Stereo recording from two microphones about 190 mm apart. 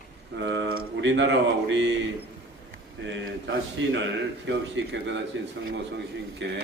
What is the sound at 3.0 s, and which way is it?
Speech, 70° right (ahead or behind).